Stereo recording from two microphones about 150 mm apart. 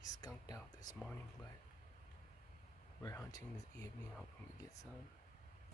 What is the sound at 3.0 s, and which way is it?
Speech, 20° left (ahead or behind).